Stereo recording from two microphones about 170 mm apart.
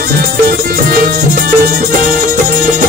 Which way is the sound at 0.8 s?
55° right (ahead or behind).